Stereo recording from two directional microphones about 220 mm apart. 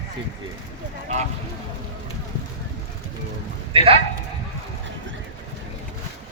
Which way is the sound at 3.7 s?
25° right (ahead or behind).